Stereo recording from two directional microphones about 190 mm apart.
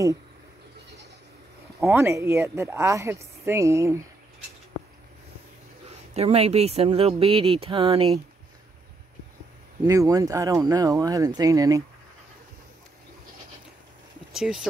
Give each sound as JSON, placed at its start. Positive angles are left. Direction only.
{"t": 1.8, "sound": "speech", "side_deg": -10}
{"t": 6.1, "sound": "speech", "side_deg": -30}
{"t": 9.8, "sound": "speech", "side_deg": -15}
{"t": 14.3, "sound": "speech", "side_deg": -5}